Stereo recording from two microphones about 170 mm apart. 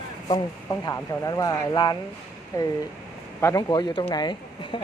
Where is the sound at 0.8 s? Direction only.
20° left (ahead or behind).